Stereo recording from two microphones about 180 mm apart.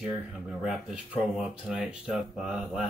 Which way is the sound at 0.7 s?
5° right (ahead or behind).